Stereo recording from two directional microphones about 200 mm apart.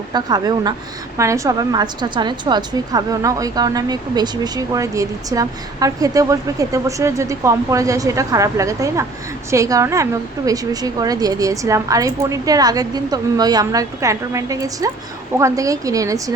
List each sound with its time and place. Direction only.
0.1 s a woman's voice: 20° right (ahead or behind)